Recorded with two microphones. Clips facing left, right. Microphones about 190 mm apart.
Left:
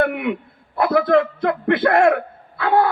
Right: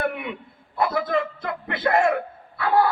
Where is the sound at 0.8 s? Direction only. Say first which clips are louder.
Left 7 dB; 65° left (ahead or behind).